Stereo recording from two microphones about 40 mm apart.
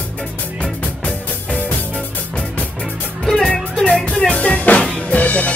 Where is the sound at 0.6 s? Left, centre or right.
Left.